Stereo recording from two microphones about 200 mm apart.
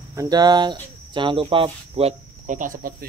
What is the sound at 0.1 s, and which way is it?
Speech, 15° right (ahead or behind).